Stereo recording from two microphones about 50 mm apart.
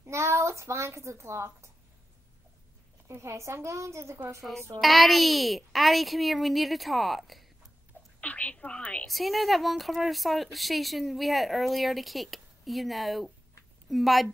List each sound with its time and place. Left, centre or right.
0.0 s a woman's voice: right
3.1 s a woman's voice: right
4.4 s speech: centre
8.2 s whispering: left
8.5 s speech: left
9.0 s speech: centre